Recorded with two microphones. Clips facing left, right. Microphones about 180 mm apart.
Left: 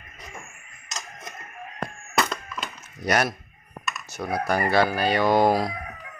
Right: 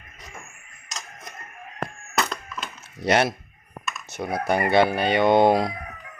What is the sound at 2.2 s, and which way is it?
Wood, centre (ahead or behind).